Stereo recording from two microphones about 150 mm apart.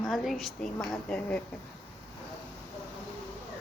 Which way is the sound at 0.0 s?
Centre (ahead or behind).